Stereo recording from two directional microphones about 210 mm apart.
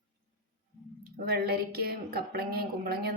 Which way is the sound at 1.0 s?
45° right (ahead or behind).